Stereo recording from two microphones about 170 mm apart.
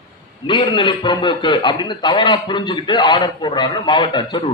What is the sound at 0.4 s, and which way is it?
A man's voice, 25° left (ahead or behind).